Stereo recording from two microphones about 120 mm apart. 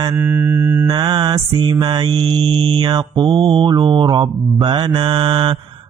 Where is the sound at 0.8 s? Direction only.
35° right (ahead or behind).